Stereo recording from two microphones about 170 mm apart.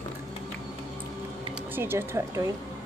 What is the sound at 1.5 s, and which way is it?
Speech, 15° right (ahead or behind).